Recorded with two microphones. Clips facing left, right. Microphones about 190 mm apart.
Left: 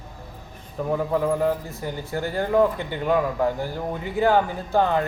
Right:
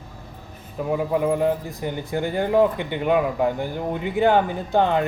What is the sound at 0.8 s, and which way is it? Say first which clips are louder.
A man's voice: right 1 dB; 10° right (ahead or behind).